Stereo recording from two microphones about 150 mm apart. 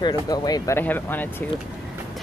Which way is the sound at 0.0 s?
25° left (ahead or behind).